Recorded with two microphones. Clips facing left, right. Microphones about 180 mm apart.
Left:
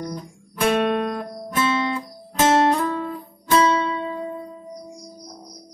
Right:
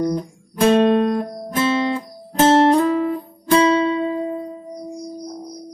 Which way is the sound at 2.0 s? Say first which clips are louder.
Right 4 dB; 30° right (ahead or behind).